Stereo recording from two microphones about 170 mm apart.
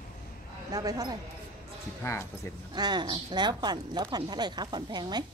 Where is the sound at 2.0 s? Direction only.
15° left (ahead or behind).